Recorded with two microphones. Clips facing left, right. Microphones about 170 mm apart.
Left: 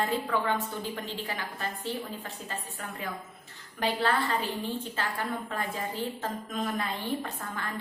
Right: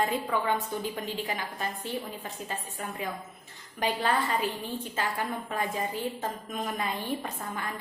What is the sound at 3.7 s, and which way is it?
Speech, 15° right (ahead or behind).